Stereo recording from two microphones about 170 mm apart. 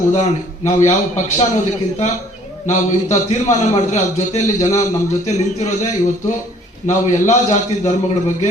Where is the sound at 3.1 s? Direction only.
40° left (ahead or behind).